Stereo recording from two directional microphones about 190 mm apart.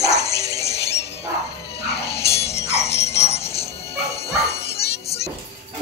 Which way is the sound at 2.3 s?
30° left (ahead or behind).